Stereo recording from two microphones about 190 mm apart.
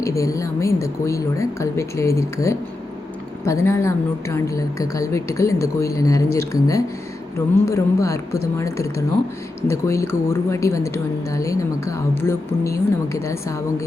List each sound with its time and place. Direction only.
0.0 s speech: 15° left (ahead or behind)